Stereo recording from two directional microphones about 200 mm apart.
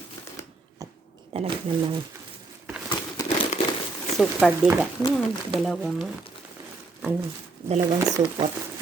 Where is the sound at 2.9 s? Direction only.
20° left (ahead or behind).